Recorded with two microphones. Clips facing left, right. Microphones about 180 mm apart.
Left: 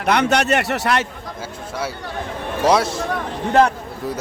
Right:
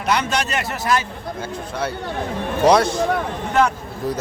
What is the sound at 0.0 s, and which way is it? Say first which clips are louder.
A man's voice: left 4 dB; 60° left (ahead or behind).